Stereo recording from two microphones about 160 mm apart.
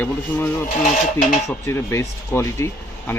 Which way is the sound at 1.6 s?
15° left (ahead or behind).